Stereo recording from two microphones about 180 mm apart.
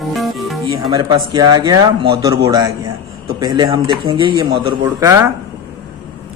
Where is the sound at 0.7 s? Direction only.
20° right (ahead or behind).